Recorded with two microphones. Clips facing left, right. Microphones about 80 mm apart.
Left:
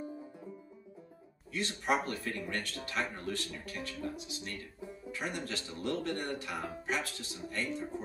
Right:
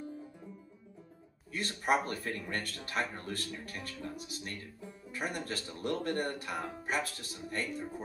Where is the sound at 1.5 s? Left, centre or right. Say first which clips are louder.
Right 1 dB; right.